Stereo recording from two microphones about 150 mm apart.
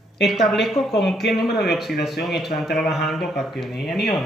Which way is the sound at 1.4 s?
90° left.